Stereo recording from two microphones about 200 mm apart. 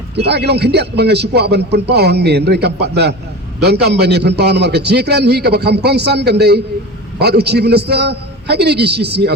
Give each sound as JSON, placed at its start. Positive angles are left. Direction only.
{"t": 0.3, "sound": "a man's voice", "side_deg": -55}